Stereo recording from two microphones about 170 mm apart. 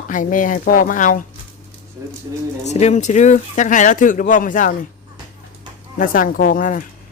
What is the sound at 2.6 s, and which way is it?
Speech, 40° left (ahead or behind).